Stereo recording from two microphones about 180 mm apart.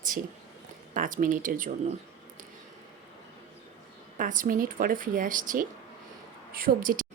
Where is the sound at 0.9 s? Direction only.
50° right (ahead or behind).